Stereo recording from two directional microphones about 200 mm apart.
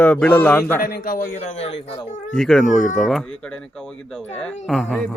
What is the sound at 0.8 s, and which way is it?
Speech, 45° left (ahead or behind).